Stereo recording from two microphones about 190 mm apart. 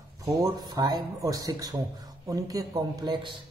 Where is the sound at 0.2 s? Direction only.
20° right (ahead or behind).